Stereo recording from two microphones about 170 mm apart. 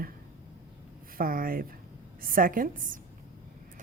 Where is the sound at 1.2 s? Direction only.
55° right (ahead or behind).